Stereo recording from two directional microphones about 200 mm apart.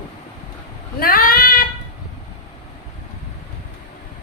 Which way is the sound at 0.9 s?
45° left (ahead or behind).